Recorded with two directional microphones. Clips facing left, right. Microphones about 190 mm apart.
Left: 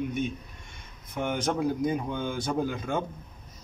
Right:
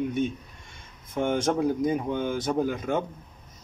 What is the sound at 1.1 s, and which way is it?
Speech, 25° right (ahead or behind).